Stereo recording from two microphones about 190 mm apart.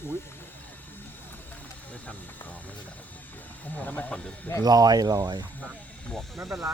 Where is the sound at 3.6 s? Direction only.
10° left (ahead or behind).